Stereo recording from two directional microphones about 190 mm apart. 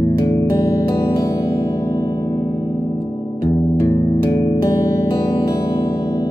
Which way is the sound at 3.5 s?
15° left (ahead or behind).